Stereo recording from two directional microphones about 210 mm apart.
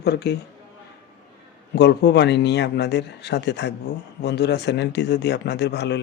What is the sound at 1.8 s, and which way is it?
Speech, 55° left (ahead or behind).